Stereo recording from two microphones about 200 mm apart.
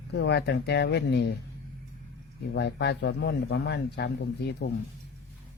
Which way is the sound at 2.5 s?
60° left (ahead or behind).